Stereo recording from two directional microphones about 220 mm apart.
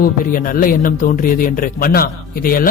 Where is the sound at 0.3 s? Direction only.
40° left (ahead or behind).